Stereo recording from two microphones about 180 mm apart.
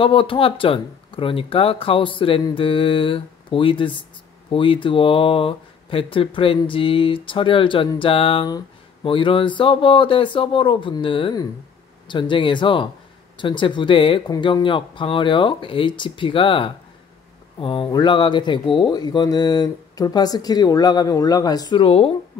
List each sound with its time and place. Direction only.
0.0 s speech: 30° left (ahead or behind)